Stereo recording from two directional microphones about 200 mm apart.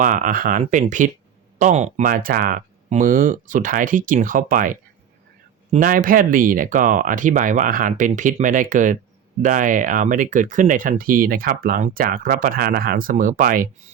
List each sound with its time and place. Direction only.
0.0 s speech: 40° right (ahead or behind)